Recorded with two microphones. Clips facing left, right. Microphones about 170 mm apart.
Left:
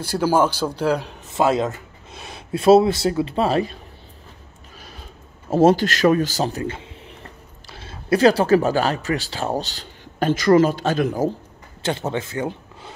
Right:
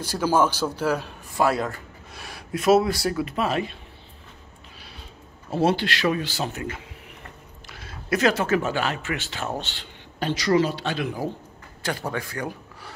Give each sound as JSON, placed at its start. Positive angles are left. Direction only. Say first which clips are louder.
{"t": 0.0, "sound": "a man's voice", "louder": "left 3 dB", "side_deg": 10}
{"t": 5.5, "sound": "a man's voice", "louder": "left 7 dB", "side_deg": 45}
{"t": 11.8, "sound": "speech", "louder": "left 5 dB", "side_deg": 25}